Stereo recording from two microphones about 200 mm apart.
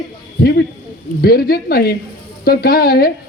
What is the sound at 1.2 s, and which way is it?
A man's voice, 50° left (ahead or behind).